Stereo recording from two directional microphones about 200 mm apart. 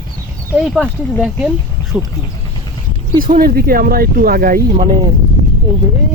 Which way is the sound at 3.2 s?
45° right (ahead or behind).